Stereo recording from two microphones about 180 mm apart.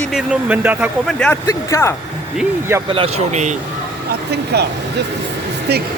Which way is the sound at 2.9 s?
35° right (ahead or behind).